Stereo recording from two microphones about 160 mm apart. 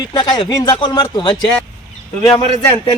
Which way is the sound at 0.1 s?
25° left (ahead or behind).